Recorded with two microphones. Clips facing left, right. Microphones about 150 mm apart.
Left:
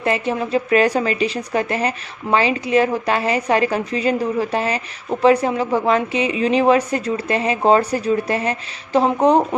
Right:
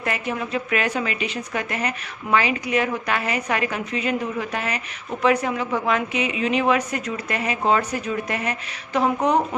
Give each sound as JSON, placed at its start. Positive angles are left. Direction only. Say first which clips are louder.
{"t": 0.0, "sound": "a woman's voice", "louder": "left 6 dB", "side_deg": 30}